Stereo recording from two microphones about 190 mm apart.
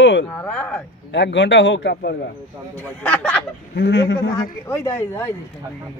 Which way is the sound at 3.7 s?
70° left (ahead or behind).